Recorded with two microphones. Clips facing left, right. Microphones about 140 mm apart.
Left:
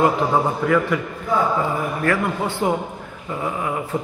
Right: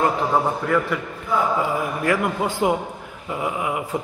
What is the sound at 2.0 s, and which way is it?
A man's voice, 15° right (ahead or behind).